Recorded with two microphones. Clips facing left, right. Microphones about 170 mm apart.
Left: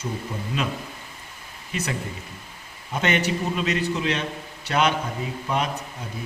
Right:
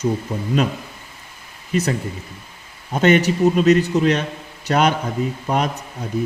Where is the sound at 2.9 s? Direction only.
40° right (ahead or behind).